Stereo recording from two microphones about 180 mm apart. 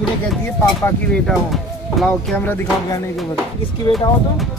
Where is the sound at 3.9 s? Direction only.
30° left (ahead or behind).